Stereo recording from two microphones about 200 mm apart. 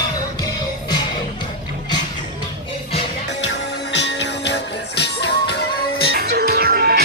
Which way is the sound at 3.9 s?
60° left (ahead or behind).